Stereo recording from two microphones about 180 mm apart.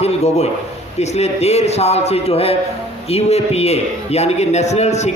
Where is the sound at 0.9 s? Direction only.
35° left (ahead or behind).